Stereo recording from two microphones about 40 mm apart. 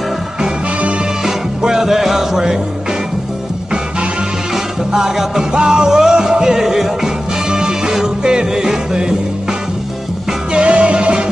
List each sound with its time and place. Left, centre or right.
1.2 s music: centre
4.9 s music: centre; by 11.2 s right